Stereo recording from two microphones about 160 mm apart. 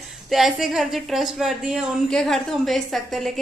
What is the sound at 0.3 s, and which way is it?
A woman's voice, centre (ahead or behind).